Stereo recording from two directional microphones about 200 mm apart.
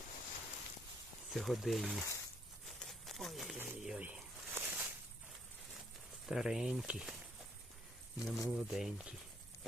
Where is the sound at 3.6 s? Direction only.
5° right (ahead or behind).